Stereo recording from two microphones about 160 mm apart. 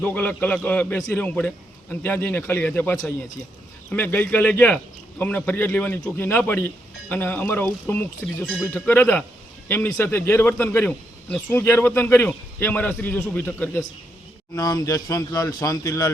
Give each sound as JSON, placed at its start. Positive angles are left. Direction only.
{"t": 0.0, "sound": "a man's voice", "side_deg": 10}
{"t": 14.5, "sound": "a man's voice", "side_deg": 20}